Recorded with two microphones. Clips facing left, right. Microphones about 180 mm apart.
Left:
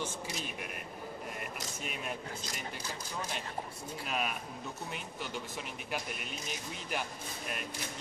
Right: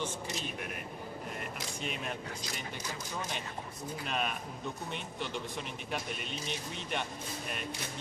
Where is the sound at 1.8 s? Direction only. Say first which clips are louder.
Right 2 dB; 5° left (ahead or behind).